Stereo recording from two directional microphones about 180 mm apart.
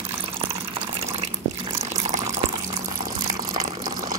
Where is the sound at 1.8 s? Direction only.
40° right (ahead or behind).